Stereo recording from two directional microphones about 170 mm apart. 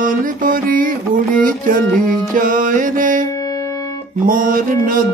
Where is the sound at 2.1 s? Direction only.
55° right (ahead or behind).